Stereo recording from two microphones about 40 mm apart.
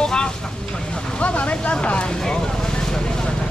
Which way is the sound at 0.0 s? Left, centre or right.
Left.